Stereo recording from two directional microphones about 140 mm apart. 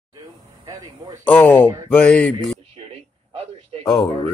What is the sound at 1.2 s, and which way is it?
Speech, 10° left (ahead or behind).